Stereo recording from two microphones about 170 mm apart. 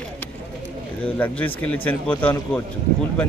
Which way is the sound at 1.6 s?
10° left (ahead or behind).